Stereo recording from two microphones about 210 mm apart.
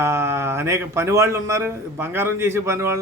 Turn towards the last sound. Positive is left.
turn(degrees=-15)  # may be behind; listen again after turning